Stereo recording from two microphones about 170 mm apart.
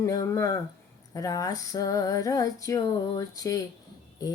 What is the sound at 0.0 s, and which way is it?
Music, 20° left (ahead or behind).